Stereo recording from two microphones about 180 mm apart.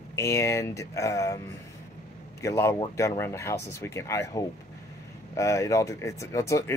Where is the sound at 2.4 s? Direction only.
15° left (ahead or behind).